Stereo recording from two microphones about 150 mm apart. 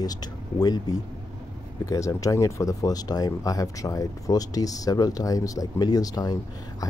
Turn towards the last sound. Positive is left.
turn(degrees=25)  # may be behind; listen again after turning